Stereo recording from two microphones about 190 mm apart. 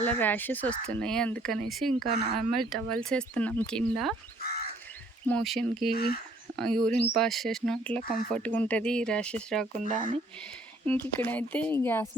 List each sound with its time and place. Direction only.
0.0 s speech: 10° left (ahead or behind)
4.4 s crow: 55° left (ahead or behind)
5.2 s speech: 5° left (ahead or behind)
5.9 s speech: 50° left (ahead or behind)
6.6 s speech: 5° left (ahead or behind)
9.8 s speech: 40° right (ahead or behind)
10.8 s speech: 10° left (ahead or behind)